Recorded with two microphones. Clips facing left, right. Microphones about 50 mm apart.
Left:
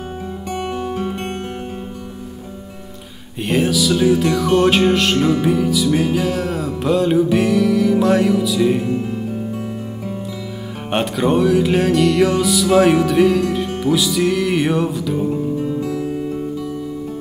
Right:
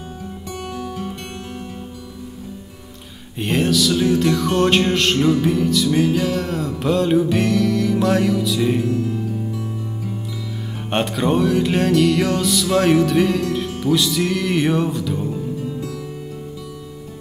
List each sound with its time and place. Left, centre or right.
0.6 s music: left
3.4 s music: centre
8.9 s music: left
10.9 s music: centre
15.3 s music: left